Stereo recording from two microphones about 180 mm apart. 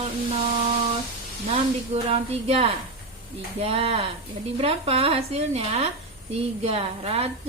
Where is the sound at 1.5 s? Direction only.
35° right (ahead or behind).